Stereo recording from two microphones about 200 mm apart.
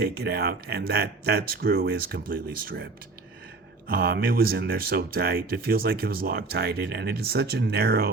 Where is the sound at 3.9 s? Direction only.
50° right (ahead or behind).